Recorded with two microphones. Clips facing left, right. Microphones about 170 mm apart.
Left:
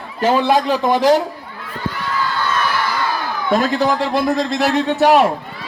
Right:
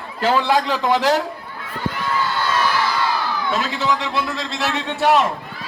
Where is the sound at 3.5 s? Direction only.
40° left (ahead or behind).